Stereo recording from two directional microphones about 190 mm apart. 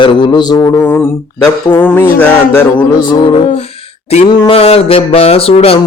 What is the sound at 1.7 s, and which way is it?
Mantra, 10° left (ahead or behind).